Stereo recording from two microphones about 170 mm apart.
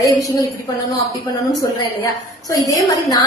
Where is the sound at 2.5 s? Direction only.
20° left (ahead or behind).